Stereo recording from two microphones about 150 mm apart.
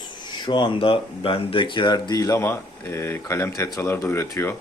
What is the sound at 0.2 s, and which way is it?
Speech, 30° left (ahead or behind).